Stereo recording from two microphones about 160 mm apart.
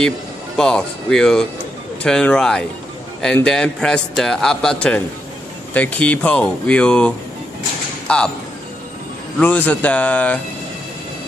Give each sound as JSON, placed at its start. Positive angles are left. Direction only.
{"t": 0.6, "sound": "a man's voice", "side_deg": 5}
{"t": 9.4, "sound": "speech", "side_deg": 10}